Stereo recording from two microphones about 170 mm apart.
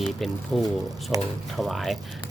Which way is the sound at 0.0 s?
Centre (ahead or behind).